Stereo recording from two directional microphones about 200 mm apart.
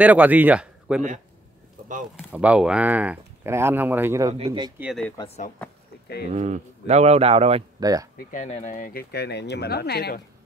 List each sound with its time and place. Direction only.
0.0 s speech: 5° right (ahead or behind)
2.1 s speech: 5° right (ahead or behind)
4.8 s speech: centre (ahead or behind)
5.1 s speech: 25° left (ahead or behind)
6.3 s speech: 35° right (ahead or behind)
7.8 s speech: 20° right (ahead or behind)
8.2 s speech: 40° left (ahead or behind)